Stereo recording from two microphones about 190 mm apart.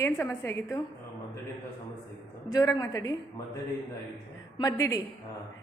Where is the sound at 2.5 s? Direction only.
20° left (ahead or behind).